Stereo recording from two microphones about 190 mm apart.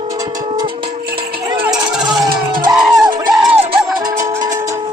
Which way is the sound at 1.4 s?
20° right (ahead or behind).